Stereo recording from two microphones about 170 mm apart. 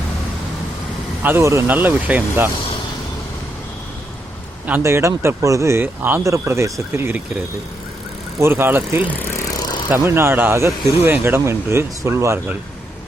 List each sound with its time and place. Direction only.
1.2 s speech: 15° right (ahead or behind)
4.6 s speech: 15° right (ahead or behind)
8.4 s speech: 15° right (ahead or behind)
9.0 s speech: 10° left (ahead or behind)
9.9 s speech: 15° right (ahead or behind)